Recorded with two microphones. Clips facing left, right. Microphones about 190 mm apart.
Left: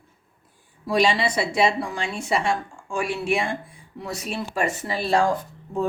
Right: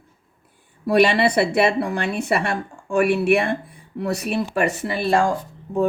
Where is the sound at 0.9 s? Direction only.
60° right (ahead or behind).